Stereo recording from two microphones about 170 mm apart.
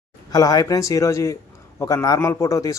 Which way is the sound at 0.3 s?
20° left (ahead or behind).